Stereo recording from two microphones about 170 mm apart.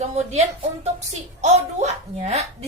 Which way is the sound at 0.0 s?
40° right (ahead or behind).